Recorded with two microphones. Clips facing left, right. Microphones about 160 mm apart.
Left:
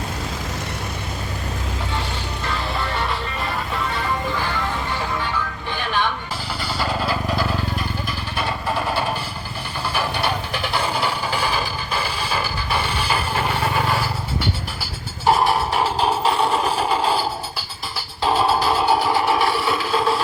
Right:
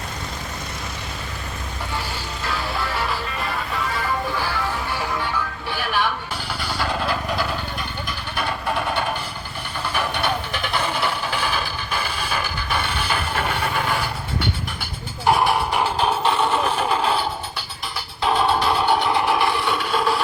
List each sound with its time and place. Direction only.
2.5 s music: 5° right (ahead or behind)
5.7 s music: 10° right (ahead or behind)
6.7 s vehicle: 5° left (ahead or behind)
9.9 s music: 5° left (ahead or behind)
11.6 s music: 30° left (ahead or behind)
13.1 s a sound: 10° left (ahead or behind)
15.2 s a sound: centre (ahead or behind)
16.3 s a sound: 35° left (ahead or behind)
17.9 s music: centre (ahead or behind)